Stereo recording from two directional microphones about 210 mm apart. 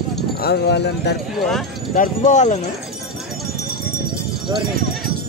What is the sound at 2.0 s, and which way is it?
Speech, 35° left (ahead or behind).